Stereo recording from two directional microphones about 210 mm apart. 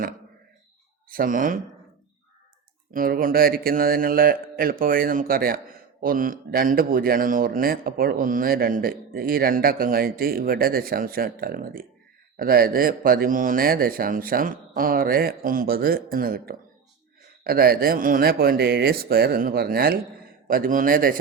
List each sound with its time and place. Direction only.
1.1 s speech: 40° right (ahead or behind)
2.9 s speech: 40° right (ahead or behind)